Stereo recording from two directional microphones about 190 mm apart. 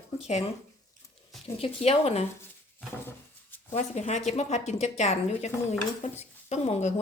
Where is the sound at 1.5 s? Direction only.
30° left (ahead or behind).